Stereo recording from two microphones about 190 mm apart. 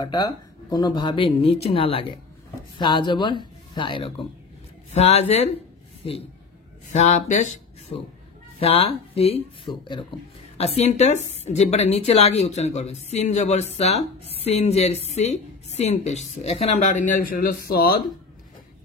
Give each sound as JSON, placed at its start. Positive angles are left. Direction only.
{"t": 0.0, "sound": "a woman's voice", "side_deg": 20}
{"t": 6.9, "sound": "a woman's voice", "side_deg": 40}
{"t": 7.9, "sound": "a woman's voice", "side_deg": 30}